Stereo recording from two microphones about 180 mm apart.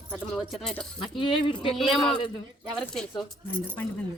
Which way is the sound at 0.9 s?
30° left (ahead or behind).